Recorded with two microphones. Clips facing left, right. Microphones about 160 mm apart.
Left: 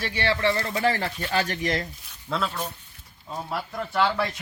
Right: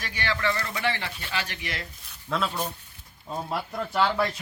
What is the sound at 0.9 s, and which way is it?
Speech, 40° left (ahead or behind).